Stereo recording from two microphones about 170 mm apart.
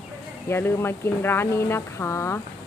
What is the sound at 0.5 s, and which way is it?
Speech, 15° left (ahead or behind).